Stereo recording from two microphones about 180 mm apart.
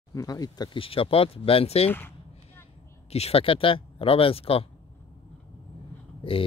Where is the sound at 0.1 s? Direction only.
20° left (ahead or behind).